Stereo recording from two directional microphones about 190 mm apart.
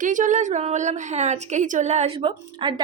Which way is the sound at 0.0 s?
45° right (ahead or behind).